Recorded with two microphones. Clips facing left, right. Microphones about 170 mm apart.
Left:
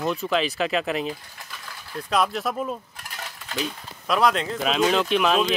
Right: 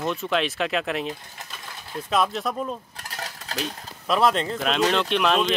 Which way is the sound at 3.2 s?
35° right (ahead or behind).